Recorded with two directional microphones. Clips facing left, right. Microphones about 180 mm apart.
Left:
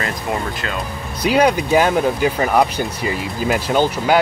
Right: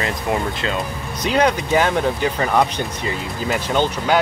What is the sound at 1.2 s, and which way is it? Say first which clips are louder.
Speech: left 3 dB; 10° left (ahead or behind).